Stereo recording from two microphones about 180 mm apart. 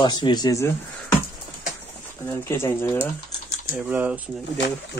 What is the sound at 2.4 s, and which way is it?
Speech, 15° left (ahead or behind).